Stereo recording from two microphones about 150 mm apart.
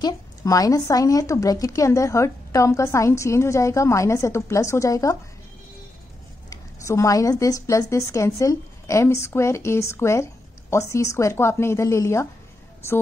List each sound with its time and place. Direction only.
0.0 s a woman's voice: 25° left (ahead or behind)
6.5 s a woman's voice: 20° left (ahead or behind)